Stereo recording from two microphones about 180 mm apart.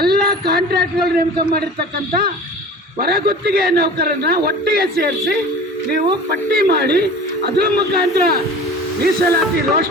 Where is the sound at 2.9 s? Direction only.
60° right (ahead or behind).